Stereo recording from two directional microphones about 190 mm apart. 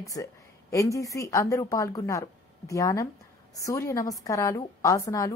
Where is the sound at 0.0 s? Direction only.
15° left (ahead or behind).